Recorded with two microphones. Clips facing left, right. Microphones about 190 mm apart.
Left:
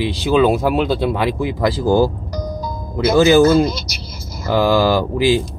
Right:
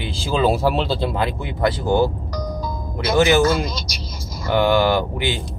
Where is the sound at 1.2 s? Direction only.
90° left.